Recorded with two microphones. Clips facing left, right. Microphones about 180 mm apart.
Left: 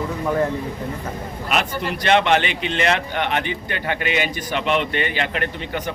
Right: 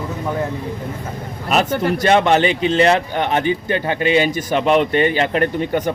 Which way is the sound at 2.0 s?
40° right (ahead or behind).